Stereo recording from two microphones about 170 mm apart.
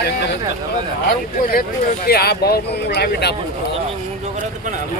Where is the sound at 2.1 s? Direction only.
65° left (ahead or behind).